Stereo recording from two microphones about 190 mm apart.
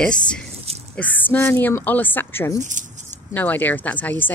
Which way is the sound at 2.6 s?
40° right (ahead or behind).